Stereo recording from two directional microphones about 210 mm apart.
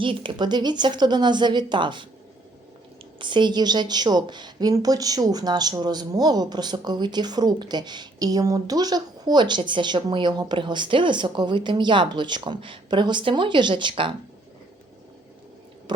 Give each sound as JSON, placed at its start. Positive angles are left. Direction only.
{"t": 0.0, "sound": "a woman's voice", "side_deg": -25}
{"t": 3.2, "sound": "a woman's voice", "side_deg": -20}